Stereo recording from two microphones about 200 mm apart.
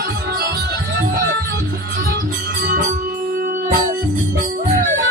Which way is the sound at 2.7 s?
40° right (ahead or behind).